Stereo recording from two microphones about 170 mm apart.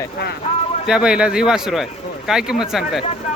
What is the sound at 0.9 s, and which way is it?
Speech, 5° right (ahead or behind).